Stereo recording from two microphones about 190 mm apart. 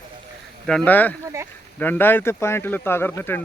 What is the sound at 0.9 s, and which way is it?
Speech, 10° left (ahead or behind).